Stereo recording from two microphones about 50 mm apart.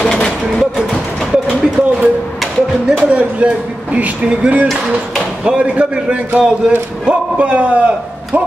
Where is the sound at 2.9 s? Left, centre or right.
Right.